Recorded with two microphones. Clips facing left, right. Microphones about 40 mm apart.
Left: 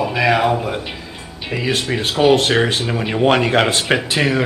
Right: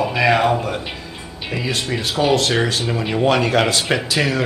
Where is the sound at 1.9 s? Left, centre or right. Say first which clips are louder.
Left 4 dB; left.